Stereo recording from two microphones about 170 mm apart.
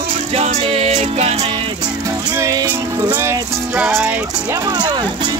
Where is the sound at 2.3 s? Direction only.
15° right (ahead or behind).